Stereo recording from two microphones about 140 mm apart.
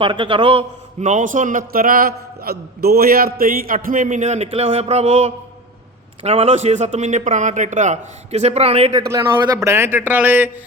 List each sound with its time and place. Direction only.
0.0 s a man's voice: 35° right (ahead or behind)
0.9 s a man's voice: 60° right (ahead or behind)
8.9 s speech: 25° right (ahead or behind)